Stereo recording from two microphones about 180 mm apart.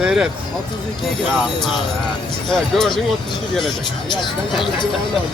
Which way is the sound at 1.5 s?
25° left (ahead or behind).